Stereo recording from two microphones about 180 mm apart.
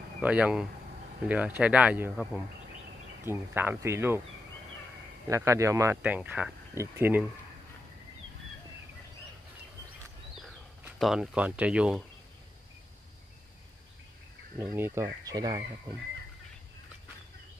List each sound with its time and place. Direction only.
0.2 s speech: 5° right (ahead or behind)
5.3 s speech: 15° right (ahead or behind)
10.3 s a sound: centre (ahead or behind)
14.8 s speech: 15° right (ahead or behind)